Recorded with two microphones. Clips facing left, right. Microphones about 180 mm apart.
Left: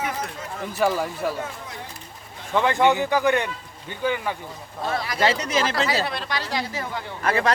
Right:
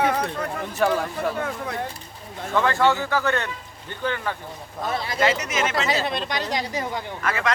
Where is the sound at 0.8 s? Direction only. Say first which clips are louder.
Right 1 dB; 5° left (ahead or behind).